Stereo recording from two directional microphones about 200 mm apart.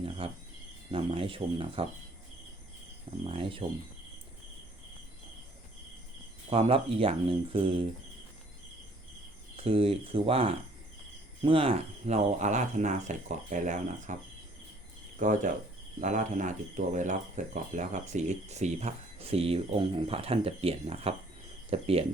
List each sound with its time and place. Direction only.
0.2 s speech: 25° right (ahead or behind)
3.2 s speech: 30° right (ahead or behind)
6.5 s speech: 30° right (ahead or behind)
9.6 s speech: 30° right (ahead or behind)
15.2 s speech: 40° right (ahead or behind)